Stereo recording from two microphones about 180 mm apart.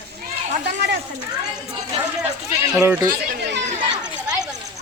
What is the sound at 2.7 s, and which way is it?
Speech, 5° right (ahead or behind).